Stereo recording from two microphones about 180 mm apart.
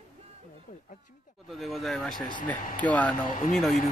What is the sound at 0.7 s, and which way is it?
Speech, 45° left (ahead or behind).